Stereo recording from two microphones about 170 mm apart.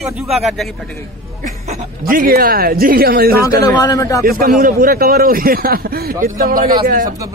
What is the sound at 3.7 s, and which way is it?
Speech, 20° left (ahead or behind).